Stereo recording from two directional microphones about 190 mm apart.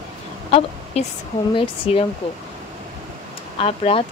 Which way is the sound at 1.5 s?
25° left (ahead or behind).